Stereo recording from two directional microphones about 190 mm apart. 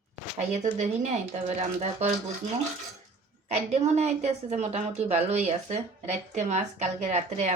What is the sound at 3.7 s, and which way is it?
A woman's voice, 35° right (ahead or behind).